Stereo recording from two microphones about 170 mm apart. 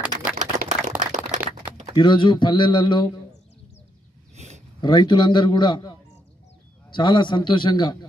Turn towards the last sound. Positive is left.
turn(degrees=25)  # may be behind; listen again after turning